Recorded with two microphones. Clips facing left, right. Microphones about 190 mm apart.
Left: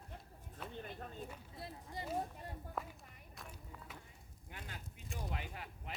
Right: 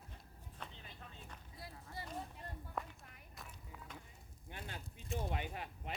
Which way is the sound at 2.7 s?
Centre (ahead or behind).